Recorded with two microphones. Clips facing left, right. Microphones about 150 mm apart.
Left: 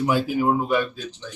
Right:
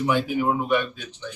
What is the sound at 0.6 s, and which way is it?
Speech, 35° left (ahead or behind).